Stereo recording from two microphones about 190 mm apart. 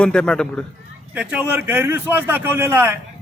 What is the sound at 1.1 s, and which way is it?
A man's voice, 5° right (ahead or behind).